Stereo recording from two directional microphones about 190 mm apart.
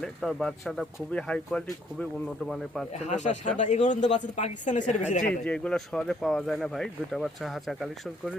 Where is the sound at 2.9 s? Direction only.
40° left (ahead or behind).